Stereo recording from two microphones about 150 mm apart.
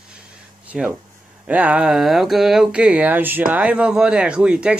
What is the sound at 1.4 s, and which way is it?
Speech, 10° right (ahead or behind).